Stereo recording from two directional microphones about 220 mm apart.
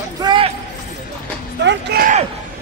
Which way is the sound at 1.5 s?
50° right (ahead or behind).